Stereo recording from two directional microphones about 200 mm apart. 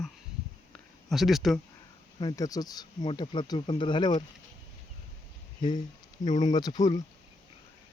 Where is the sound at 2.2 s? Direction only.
20° left (ahead or behind).